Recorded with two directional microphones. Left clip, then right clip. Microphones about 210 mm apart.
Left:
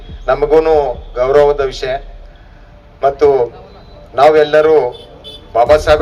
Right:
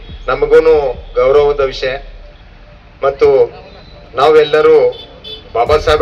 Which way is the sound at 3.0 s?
60° left (ahead or behind).